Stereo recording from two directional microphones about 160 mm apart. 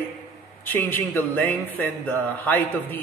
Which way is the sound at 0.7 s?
15° left (ahead or behind).